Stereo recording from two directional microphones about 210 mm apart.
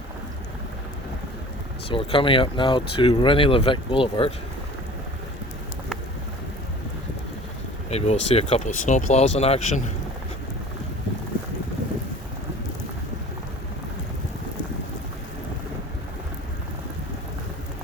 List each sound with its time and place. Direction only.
1.9 s speech: 25° left (ahead or behind)
7.9 s speech: 30° left (ahead or behind)